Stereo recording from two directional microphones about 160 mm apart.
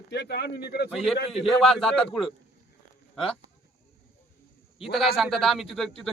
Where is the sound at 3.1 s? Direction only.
5° left (ahead or behind).